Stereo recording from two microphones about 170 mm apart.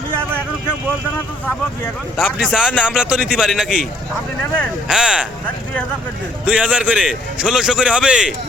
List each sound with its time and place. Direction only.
2.1 s a man's voice: 5° right (ahead or behind)
4.9 s a man's voice: 5° right (ahead or behind)
6.4 s a man's voice: 5° right (ahead or behind)